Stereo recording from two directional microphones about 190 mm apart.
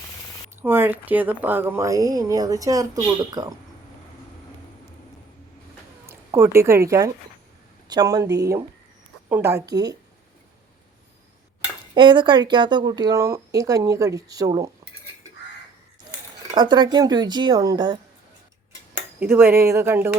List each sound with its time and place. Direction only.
0.6 s speech: 10° right (ahead or behind)
6.1 s a woman's voice: 10° right (ahead or behind)
11.9 s speech: 25° right (ahead or behind)
16.6 s speech: 25° right (ahead or behind)
19.2 s speech: 10° right (ahead or behind)